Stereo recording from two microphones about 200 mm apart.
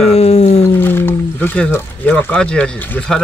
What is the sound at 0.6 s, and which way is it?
Speech, 10° left (ahead or behind).